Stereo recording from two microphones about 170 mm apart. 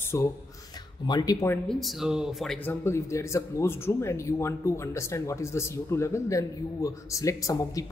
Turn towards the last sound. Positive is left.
turn(degrees=20)  # may be behind; listen again after turning